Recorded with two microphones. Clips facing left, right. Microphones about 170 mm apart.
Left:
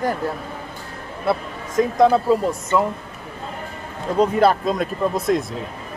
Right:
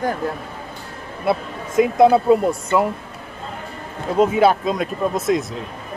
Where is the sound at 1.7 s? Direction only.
10° right (ahead or behind).